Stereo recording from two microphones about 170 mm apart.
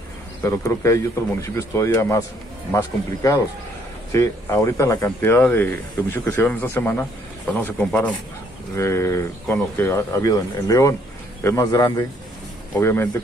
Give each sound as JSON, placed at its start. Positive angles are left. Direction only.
{"t": 0.4, "sound": "speech", "side_deg": 15}